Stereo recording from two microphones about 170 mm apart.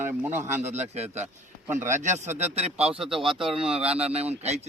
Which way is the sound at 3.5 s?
35° right (ahead or behind).